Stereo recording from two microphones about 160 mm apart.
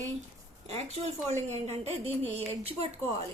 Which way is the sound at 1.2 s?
45° right (ahead or behind).